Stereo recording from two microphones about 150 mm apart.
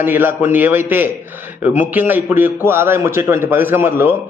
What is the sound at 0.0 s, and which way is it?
A man's voice, 15° right (ahead or behind).